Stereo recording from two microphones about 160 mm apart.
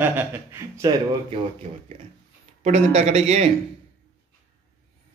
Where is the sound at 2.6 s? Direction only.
40° right (ahead or behind).